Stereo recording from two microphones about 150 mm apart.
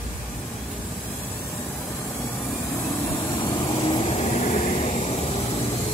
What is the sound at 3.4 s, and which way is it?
Vehicle, 30° left (ahead or behind).